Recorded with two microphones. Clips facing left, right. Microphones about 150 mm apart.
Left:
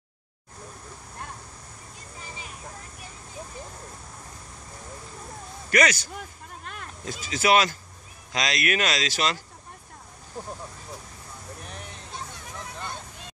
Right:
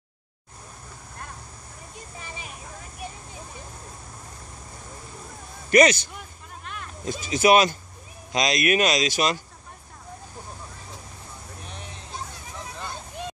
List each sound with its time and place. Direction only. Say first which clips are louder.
5.7 s speech: right 6 dB; 20° right (ahead or behind)
7.1 s speech: right 4 dB; 20° right (ahead or behind)